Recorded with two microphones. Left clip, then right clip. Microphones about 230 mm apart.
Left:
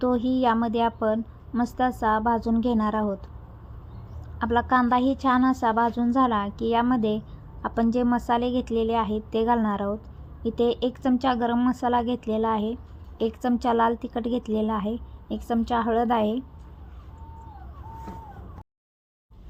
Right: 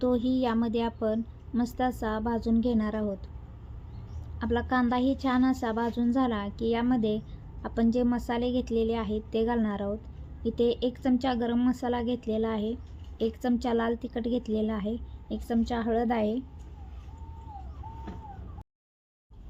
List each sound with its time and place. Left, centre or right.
0.0 s a woman's voice: centre
4.4 s speech: centre